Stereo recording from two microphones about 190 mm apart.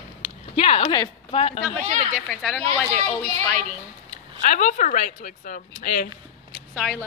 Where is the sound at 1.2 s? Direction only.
30° left (ahead or behind).